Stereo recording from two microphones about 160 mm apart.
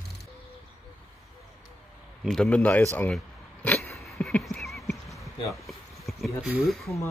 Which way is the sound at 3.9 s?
Centre (ahead or behind).